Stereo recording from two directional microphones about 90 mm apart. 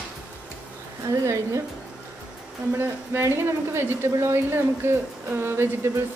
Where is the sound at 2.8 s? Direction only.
25° right (ahead or behind).